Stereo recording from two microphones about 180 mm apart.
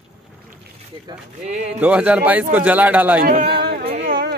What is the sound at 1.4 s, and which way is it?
Speech, 40° right (ahead or behind).